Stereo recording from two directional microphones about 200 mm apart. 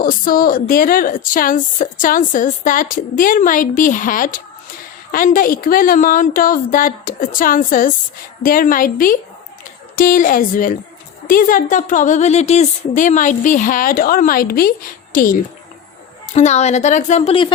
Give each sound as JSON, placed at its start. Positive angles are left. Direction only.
{"t": 0.0, "sound": "a woman's voice", "side_deg": 45}